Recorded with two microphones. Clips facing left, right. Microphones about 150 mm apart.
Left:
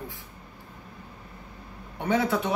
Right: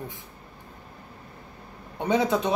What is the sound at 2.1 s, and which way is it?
Speech, 20° right (ahead or behind).